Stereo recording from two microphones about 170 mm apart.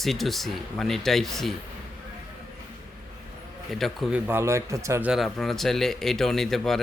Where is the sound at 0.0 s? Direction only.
Centre (ahead or behind).